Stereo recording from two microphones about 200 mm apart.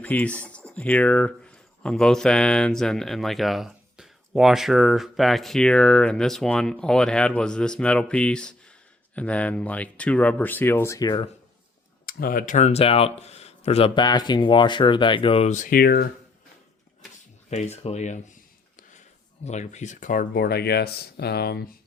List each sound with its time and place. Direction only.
0.0 s speech: 5° left (ahead or behind)
12.0 s speech: 45° left (ahead or behind)
17.5 s speech: 35° left (ahead or behind)
19.5 s speech: 35° left (ahead or behind); by 21.6 s 55° left (ahead or behind)